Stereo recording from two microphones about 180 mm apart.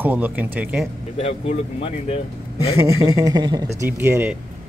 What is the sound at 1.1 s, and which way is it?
Speech, 35° left (ahead or behind).